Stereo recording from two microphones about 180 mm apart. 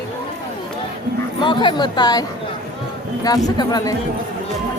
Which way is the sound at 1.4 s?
25° left (ahead or behind).